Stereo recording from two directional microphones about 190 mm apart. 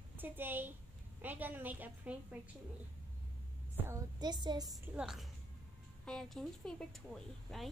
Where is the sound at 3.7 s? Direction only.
10° right (ahead or behind).